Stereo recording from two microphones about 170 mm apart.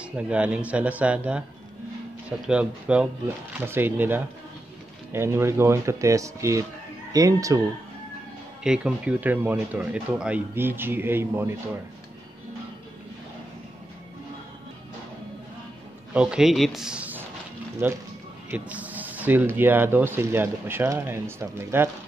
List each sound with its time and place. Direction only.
0.0 s speech: 5° right (ahead or behind)
8.6 s speech: 5° right (ahead or behind)
16.1 s speech: 5° right (ahead or behind)